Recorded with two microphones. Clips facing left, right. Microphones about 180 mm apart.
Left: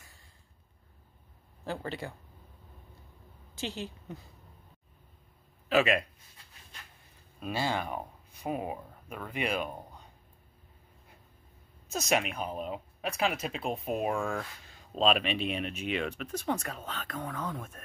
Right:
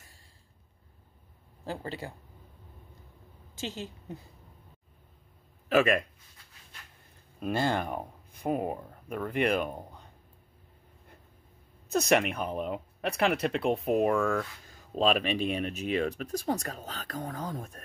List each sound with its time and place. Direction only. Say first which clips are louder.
3.6 s a woman's voice: even; 15° left (ahead or behind)
5.7 s speech: right 2 dB; 45° right (ahead or behind)
7.3 s speech: right 3 dB; 55° right (ahead or behind)
11.9 s speech: right 5 dB; 60° right (ahead or behind); by 17.8 s 35° right (ahead or behind)